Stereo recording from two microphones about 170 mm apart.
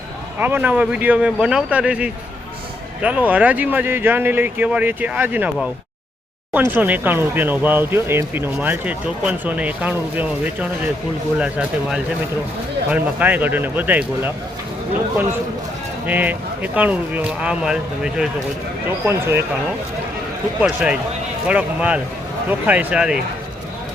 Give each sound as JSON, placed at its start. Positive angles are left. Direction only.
{"t": 0.3, "sound": "speech", "side_deg": -10}
{"t": 16.0, "sound": "speech", "side_deg": -10}
{"t": 19.0, "sound": "speech", "side_deg": -15}
{"t": 20.6, "sound": "speech", "side_deg": -5}